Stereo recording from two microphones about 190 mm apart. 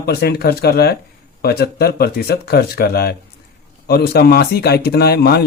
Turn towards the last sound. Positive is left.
turn(degrees=55)  # may be behind; listen again after turning